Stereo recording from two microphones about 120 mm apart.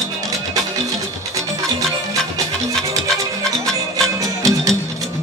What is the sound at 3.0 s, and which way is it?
Music, 5° left (ahead or behind).